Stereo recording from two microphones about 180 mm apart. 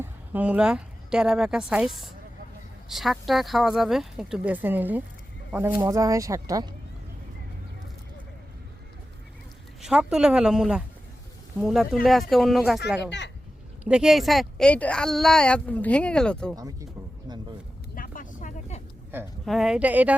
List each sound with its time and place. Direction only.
0.0 s a woman's voice: 10° right (ahead or behind)
9.8 s speech: 5° right (ahead or behind)
13.0 s speech: 75° left (ahead or behind)
13.8 s speech: 5° right (ahead or behind)
17.3 s a sound: 25° right (ahead or behind)
17.9 s vehicle: 50° left (ahead or behind)
19.1 s speech: 10° right (ahead or behind)